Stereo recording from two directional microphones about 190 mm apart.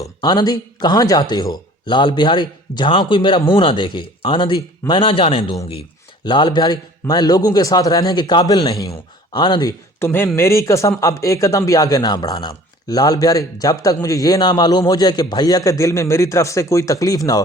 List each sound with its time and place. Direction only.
0.0 s speech: 20° left (ahead or behind)